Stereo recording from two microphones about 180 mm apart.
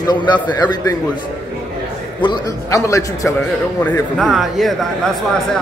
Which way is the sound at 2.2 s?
20° left (ahead or behind).